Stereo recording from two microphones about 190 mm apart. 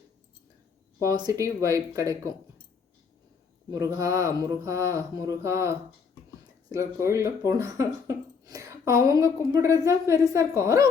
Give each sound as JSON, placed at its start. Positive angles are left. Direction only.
{"t": 0.9, "sound": "speech", "side_deg": -15}
{"t": 3.7, "sound": "speech", "side_deg": -15}